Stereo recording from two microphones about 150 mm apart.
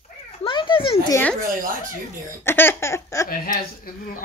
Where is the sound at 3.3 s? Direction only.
70° left (ahead or behind).